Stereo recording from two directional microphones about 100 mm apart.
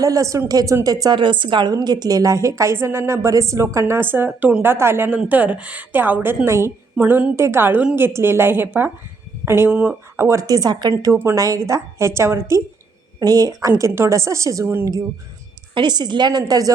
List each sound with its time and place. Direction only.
0.0 s a woman's voice: 35° right (ahead or behind); by 1.7 s 55° right (ahead or behind)
1.7 s speech: 45° right (ahead or behind); by 6.7 s 25° right (ahead or behind)
6.9 s a woman's voice: 15° right (ahead or behind)
7.3 s a woman's voice: 25° right (ahead or behind)
10.2 s a woman's voice: 30° right (ahead or behind)
10.9 s a woman's voice: 35° right (ahead or behind)
13.1 s a woman's voice: 40° right (ahead or behind)
15.7 s a woman's voice: 50° right (ahead or behind)
16.5 s a woman's voice: 35° right (ahead or behind)